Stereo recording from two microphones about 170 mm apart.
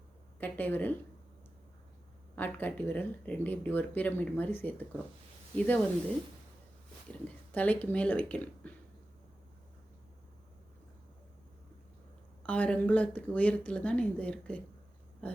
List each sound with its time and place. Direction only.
0.3 s speech: 10° left (ahead or behind)
2.3 s speech: 10° left (ahead or behind)
7.1 s speech: 10° left (ahead or behind)
12.4 s speech: 10° left (ahead or behind)